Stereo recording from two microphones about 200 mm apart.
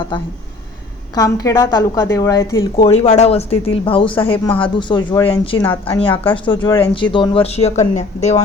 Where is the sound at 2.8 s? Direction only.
30° left (ahead or behind).